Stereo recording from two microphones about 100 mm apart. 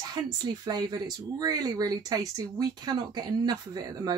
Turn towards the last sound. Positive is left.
turn(degrees=-40)  # may be behind; listen again after turning